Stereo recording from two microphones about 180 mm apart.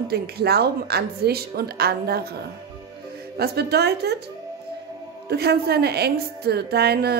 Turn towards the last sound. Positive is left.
turn(degrees=-60)  # may be behind; listen again after turning